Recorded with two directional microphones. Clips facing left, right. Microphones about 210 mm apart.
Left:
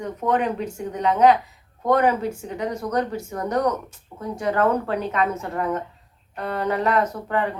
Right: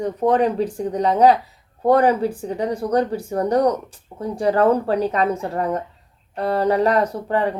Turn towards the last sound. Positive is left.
turn(degrees=-35)  # may be behind; listen again after turning